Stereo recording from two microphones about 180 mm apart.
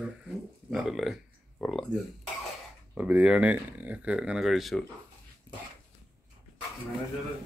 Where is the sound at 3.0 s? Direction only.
5° right (ahead or behind).